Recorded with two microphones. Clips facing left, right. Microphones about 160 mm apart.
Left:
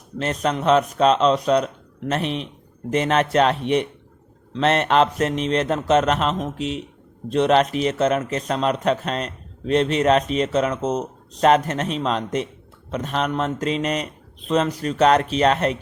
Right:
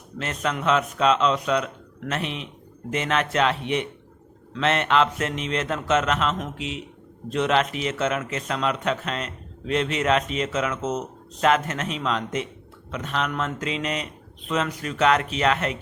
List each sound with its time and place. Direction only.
0.2 s a man's voice: 35° left (ahead or behind)